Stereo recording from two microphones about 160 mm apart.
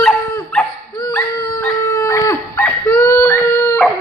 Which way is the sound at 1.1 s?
15° left (ahead or behind).